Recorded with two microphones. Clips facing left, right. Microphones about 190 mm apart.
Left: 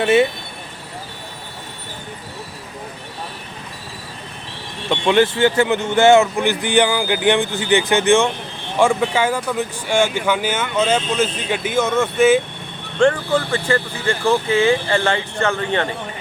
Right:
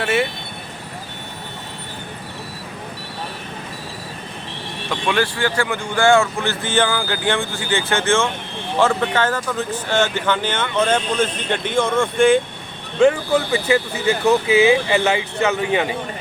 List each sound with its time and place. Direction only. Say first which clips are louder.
0.0 s speech: left 5 dB; 20° left (ahead or behind)
4.9 s speech: left 5 dB; 25° left (ahead or behind); by 12.4 s 5° left (ahead or behind)
13.0 s speech: right 1 dB; 5° right (ahead or behind)